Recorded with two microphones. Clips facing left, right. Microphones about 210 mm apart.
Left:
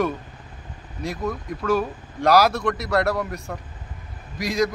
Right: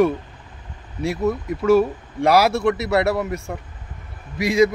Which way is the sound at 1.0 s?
5° right (ahead or behind).